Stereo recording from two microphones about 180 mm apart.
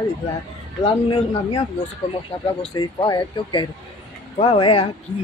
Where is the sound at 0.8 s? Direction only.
30° left (ahead or behind).